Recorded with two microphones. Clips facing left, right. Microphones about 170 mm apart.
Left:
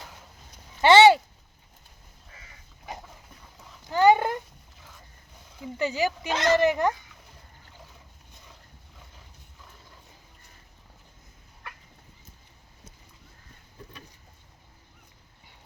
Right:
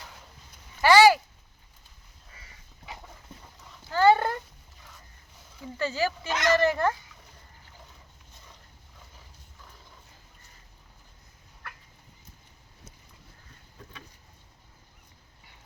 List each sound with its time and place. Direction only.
0.8 s a sound: 25° left (ahead or behind)
3.8 s dog: 15° left (ahead or behind)
5.6 s speech: 15° left (ahead or behind)
6.3 s speech: 30° left (ahead or behind)
6.6 s speech: 15° left (ahead or behind)